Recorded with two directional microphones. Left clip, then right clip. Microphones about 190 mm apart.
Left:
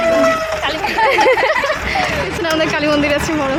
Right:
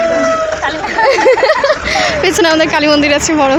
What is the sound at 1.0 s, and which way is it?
Speech, 30° right (ahead or behind).